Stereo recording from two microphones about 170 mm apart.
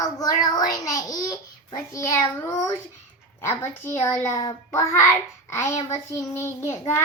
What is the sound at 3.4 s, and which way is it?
A child's voice, 15° left (ahead or behind).